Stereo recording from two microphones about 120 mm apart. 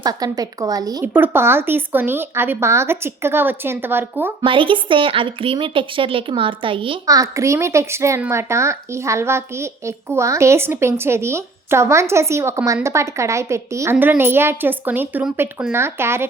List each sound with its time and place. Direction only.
0.0 s a woman's voice: 30° right (ahead or behind)
1.0 s a child's voice: 15° right (ahead or behind)
4.4 s a woman's voice: 45° right (ahead or behind)
7.1 s a child's voice: 25° right (ahead or behind)